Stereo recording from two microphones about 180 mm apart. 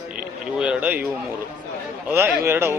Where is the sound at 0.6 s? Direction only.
10° right (ahead or behind).